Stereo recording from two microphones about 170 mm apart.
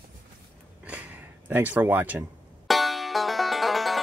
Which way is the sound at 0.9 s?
10° right (ahead or behind).